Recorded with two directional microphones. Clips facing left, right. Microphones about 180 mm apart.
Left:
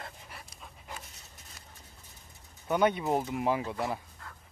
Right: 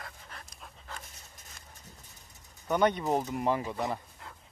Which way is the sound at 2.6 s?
5° left (ahead or behind).